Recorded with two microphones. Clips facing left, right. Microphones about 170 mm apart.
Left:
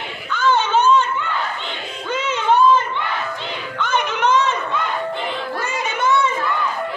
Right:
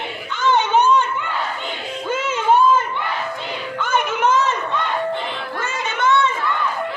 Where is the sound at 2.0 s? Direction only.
5° right (ahead or behind).